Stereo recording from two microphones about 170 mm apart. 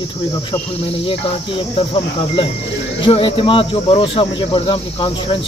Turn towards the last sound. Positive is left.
turn(degrees=30)  # may be behind; listen again after turning